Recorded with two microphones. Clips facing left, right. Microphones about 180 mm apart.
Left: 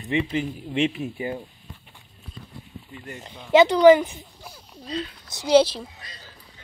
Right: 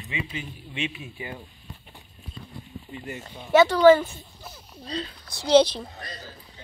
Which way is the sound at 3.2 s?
20° left (ahead or behind).